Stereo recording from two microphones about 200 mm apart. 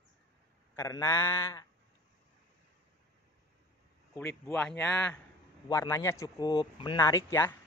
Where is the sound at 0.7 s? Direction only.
15° left (ahead or behind).